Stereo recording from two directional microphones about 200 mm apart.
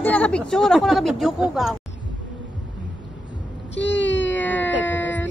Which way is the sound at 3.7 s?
65° left (ahead or behind).